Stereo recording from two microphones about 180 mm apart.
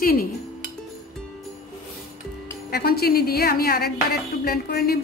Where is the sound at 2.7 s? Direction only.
60° left (ahead or behind).